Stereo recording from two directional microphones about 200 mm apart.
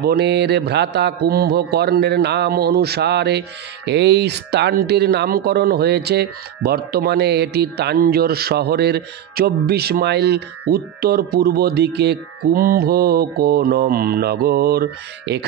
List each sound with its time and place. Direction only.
0.0 s a man's voice: 55° right (ahead or behind)